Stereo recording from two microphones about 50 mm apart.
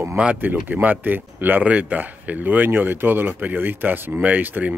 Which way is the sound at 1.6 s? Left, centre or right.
Right.